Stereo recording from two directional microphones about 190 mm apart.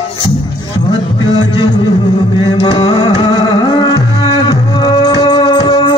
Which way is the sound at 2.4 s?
25° left (ahead or behind).